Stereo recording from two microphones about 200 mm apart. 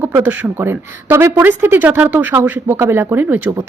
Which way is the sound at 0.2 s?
10° right (ahead or behind).